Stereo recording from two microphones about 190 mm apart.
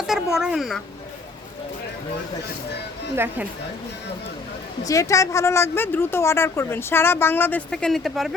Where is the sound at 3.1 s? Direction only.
10° right (ahead or behind).